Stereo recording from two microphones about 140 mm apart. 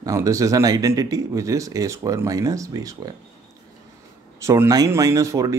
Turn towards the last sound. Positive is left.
turn(degrees=-25)  # may be behind; listen again after turning